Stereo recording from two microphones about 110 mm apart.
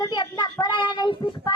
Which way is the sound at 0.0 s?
40° left (ahead or behind).